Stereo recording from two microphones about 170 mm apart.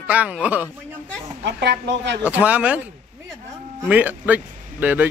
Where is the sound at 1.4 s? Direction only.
90° right.